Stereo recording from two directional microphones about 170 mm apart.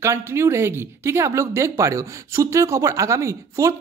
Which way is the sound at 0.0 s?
15° right (ahead or behind).